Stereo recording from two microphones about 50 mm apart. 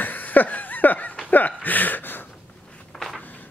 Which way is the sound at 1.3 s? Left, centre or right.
Left.